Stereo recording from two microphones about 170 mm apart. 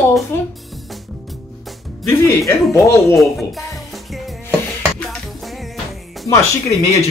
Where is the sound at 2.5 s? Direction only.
15° left (ahead or behind).